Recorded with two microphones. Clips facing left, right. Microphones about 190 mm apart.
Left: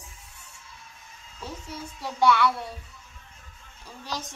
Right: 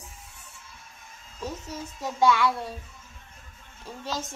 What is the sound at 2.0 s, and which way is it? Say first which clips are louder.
Speech: even; 15° right (ahead or behind).